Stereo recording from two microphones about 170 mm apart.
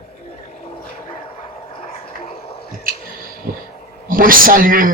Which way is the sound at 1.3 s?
35° left (ahead or behind).